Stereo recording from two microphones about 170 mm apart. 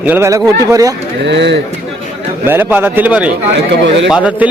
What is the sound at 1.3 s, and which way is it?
Speech, 90° right.